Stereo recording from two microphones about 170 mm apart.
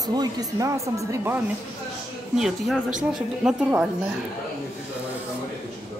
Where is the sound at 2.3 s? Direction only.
5° right (ahead or behind).